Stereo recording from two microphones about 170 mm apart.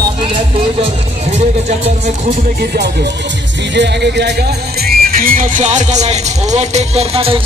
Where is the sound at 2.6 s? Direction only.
65° right (ahead or behind).